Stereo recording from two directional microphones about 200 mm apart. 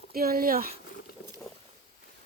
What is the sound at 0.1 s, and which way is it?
Speech, 50° right (ahead or behind).